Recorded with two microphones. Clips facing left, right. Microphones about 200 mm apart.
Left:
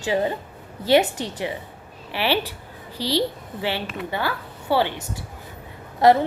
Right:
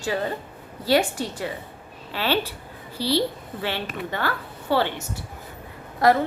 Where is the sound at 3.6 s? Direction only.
15° left (ahead or behind).